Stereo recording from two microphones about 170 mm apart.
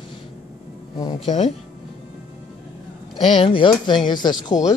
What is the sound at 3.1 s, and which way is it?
A man's voice, 35° left (ahead or behind).